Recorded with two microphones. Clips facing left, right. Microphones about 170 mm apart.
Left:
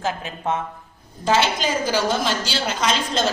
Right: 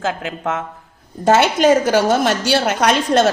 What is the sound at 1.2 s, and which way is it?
A woman's voice, 55° right (ahead or behind).